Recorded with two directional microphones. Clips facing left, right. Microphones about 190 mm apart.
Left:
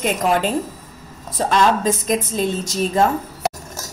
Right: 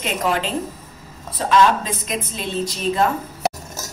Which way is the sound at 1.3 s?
45° left (ahead or behind).